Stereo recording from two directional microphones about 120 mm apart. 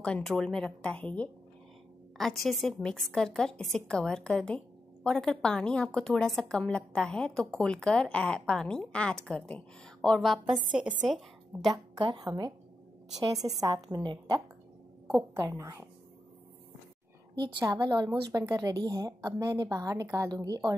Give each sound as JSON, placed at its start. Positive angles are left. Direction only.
{"t": 0.0, "sound": "a woman's voice", "side_deg": 5}
{"t": 10.7, "sound": "a woman's voice", "side_deg": -10}
{"t": 11.6, "sound": "a woman's voice", "side_deg": -40}
{"t": 17.7, "sound": "a woman's voice", "side_deg": -35}
{"t": 18.4, "sound": "a woman's voice", "side_deg": -25}